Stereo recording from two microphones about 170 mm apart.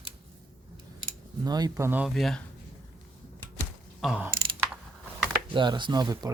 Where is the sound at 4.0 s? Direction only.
5° right (ahead or behind).